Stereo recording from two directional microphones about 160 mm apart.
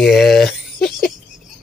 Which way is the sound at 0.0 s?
Centre (ahead or behind).